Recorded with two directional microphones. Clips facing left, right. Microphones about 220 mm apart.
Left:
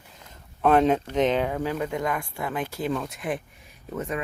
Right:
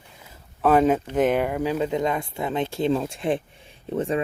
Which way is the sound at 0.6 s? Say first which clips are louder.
Right 1 dB; 5° right (ahead or behind).